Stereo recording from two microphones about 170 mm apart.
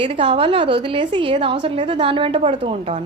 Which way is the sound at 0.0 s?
30° right (ahead or behind).